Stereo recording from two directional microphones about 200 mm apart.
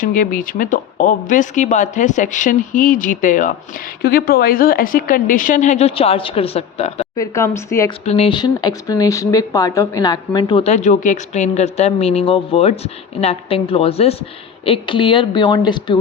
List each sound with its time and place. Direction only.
0.0 s speech: 45° left (ahead or behind)
7.2 s speech: 15° left (ahead or behind)
8.0 s speech: 30° left (ahead or behind)